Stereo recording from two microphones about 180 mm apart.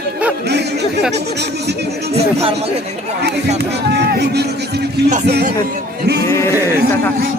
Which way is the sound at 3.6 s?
65° right (ahead or behind).